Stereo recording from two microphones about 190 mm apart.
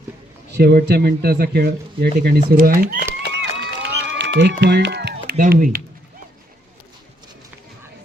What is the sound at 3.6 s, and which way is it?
Run, 70° right (ahead or behind).